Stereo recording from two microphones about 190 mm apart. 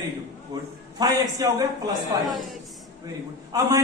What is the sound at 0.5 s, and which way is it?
A man's voice, 20° right (ahead or behind).